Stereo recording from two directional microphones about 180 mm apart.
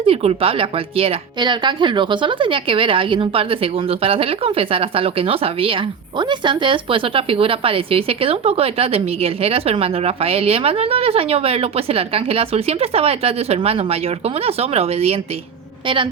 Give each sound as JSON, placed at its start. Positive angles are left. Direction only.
{"t": 0.0, "sound": "speech", "side_deg": -35}